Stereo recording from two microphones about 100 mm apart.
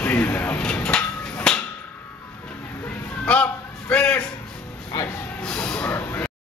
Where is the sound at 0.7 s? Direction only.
10° left (ahead or behind).